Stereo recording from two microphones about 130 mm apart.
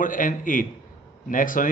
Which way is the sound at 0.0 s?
90° left.